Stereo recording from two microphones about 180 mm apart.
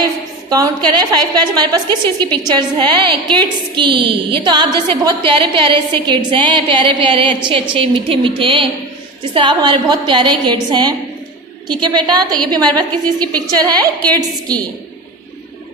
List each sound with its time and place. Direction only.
0.5 s a woman's voice: 25° right (ahead or behind)